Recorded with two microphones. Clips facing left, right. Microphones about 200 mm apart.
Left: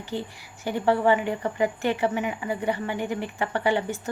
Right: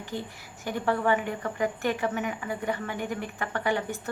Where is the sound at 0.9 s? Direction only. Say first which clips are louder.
Left 5 dB; 15° left (ahead or behind).